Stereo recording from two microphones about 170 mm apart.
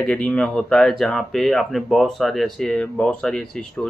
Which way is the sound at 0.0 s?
5° left (ahead or behind).